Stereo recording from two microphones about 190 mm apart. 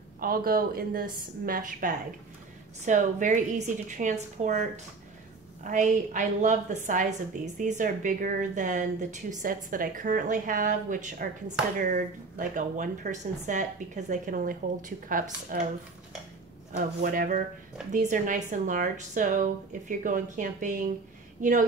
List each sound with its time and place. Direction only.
0.2 s a woman's voice: 50° right (ahead or behind)
17.0 s a woman's voice: 45° right (ahead or behind)